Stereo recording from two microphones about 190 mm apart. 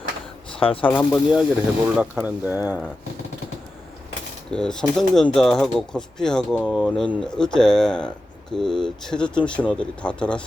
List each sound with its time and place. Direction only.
0.6 s speech: 30° left (ahead or behind)
0.9 s speech: 5° left (ahead or behind)
2.0 s speech: 10° right (ahead or behind)
4.5 s speech: 5° left (ahead or behind)